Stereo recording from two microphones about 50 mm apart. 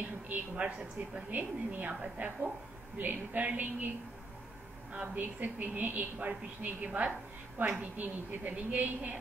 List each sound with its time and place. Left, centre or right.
0.3 s a woman's voice: right
1.3 s a woman's voice: right
4.9 s a woman's voice: right